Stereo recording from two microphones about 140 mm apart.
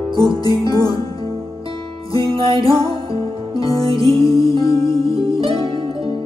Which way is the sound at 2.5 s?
35° right (ahead or behind).